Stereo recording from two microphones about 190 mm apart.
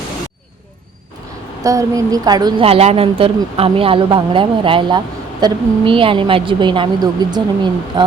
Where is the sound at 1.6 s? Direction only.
20° right (ahead or behind).